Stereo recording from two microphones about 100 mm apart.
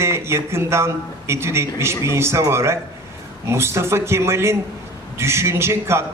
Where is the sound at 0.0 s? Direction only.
25° right (ahead or behind).